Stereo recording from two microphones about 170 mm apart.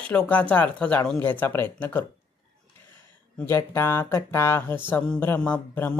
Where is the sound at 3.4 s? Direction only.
15° left (ahead or behind).